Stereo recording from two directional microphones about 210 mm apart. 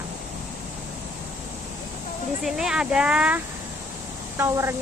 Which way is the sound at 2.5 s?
Centre (ahead or behind).